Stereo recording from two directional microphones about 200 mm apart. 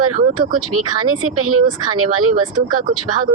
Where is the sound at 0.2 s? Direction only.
45° right (ahead or behind).